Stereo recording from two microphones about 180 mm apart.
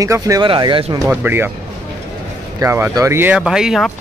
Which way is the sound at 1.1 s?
10° right (ahead or behind).